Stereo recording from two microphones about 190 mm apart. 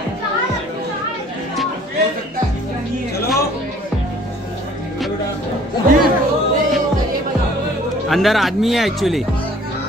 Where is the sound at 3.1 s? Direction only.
55° left (ahead or behind).